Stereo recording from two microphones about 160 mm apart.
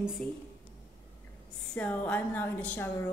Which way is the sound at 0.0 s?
Centre (ahead or behind).